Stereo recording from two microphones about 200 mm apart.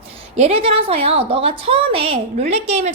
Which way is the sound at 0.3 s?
30° right (ahead or behind).